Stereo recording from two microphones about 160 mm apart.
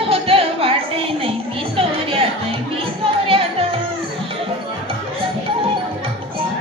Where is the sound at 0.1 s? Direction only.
35° right (ahead or behind).